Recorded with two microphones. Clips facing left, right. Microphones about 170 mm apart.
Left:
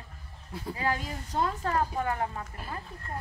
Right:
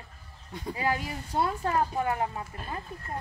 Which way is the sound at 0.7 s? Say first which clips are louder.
Right 2 dB; 15° right (ahead or behind).